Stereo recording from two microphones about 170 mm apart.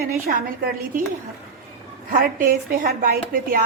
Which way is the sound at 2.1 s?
55° right (ahead or behind).